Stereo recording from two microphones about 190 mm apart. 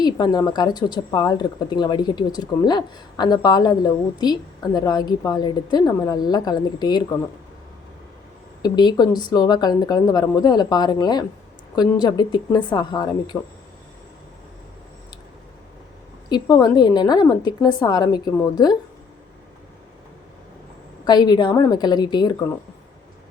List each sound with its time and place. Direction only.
0.0 s speech: 20° left (ahead or behind)
8.6 s speech: 20° left (ahead or behind)
16.3 s speech: 20° left (ahead or behind)
21.0 s speech: 20° left (ahead or behind)